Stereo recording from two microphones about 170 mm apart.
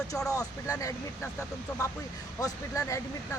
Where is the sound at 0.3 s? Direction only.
20° left (ahead or behind).